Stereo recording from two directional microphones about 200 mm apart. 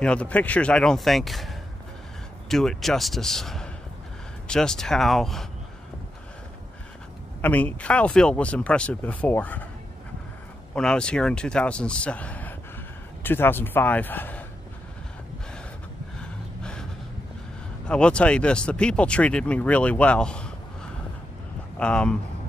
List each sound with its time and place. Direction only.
0.0 s speech: 5° left (ahead or behind)
7.4 s speech: 5° left (ahead or behind)
10.7 s speech: 5° left (ahead or behind)
17.8 s speech: 5° left (ahead or behind)
21.7 s speech: 5° left (ahead or behind)